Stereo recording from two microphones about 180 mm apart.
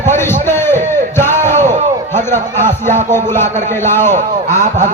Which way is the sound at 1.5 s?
40° right (ahead or behind).